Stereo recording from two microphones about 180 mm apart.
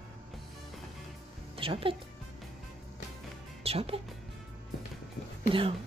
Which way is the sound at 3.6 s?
30° right (ahead or behind).